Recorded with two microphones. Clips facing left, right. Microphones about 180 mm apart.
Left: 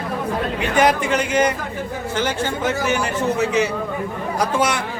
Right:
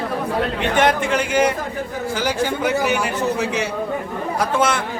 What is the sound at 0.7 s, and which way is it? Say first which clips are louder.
A man's voice: left 1 dB; 5° left (ahead or behind).